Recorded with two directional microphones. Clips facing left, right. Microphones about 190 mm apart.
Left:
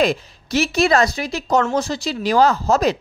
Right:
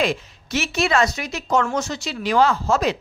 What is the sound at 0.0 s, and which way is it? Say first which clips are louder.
Speech: left 4 dB; 35° left (ahead or behind).